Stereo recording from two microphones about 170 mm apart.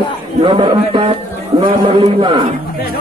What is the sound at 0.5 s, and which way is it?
Speech, 30° right (ahead or behind).